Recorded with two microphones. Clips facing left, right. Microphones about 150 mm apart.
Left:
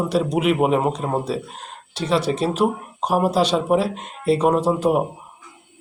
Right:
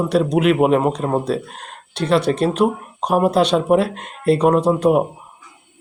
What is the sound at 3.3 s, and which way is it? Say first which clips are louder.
Speech: right 3 dB; 60° right (ahead or behind).